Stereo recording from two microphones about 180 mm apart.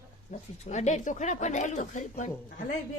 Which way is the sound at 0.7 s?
40° left (ahead or behind).